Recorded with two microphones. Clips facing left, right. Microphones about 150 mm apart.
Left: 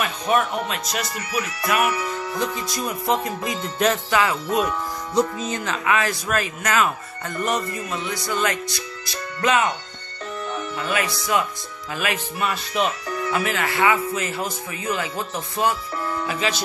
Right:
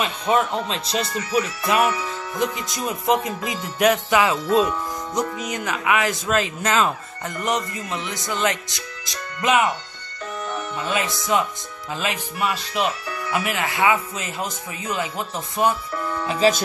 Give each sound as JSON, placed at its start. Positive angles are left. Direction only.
{"t": 0.0, "sound": "speech", "side_deg": -25}
{"t": 10.8, "sound": "speech", "side_deg": -20}
{"t": 16.4, "sound": "speech", "side_deg": -35}